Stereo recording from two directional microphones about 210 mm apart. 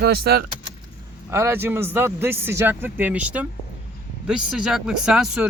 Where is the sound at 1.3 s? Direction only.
10° right (ahead or behind).